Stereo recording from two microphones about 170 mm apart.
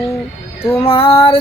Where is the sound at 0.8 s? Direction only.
35° left (ahead or behind).